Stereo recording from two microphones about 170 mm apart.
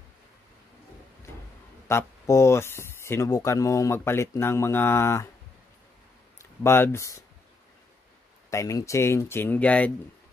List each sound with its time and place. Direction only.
1.9 s speech: 15° left (ahead or behind)
6.6 s speech: 15° left (ahead or behind)
8.5 s speech: 20° left (ahead or behind)